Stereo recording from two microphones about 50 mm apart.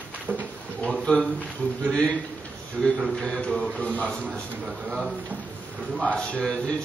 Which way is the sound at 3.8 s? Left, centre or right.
Left.